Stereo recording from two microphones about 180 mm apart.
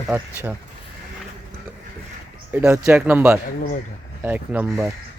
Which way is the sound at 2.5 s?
10° right (ahead or behind).